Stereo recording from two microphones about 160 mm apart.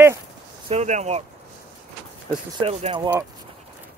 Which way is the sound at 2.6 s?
25° right (ahead or behind).